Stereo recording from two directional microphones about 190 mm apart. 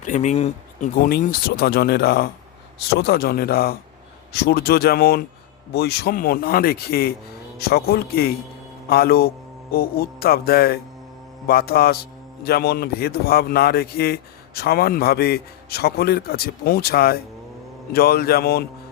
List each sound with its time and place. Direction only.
0.0 s speech: 40° left (ahead or behind)
1.0 s a man's voice: 50° left (ahead or behind)